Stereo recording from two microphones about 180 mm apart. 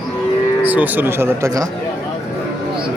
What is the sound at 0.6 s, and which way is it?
A man's voice, 10° right (ahead or behind).